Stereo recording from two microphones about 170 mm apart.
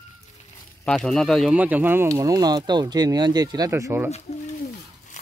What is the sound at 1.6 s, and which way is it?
Speech, 10° right (ahead or behind).